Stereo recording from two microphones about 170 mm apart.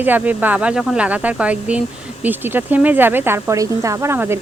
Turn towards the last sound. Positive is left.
turn(degrees=-15)  # may be behind; listen again after turning